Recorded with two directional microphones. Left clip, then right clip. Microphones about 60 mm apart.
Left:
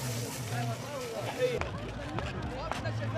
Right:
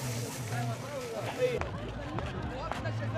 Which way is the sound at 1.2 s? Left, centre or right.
Centre.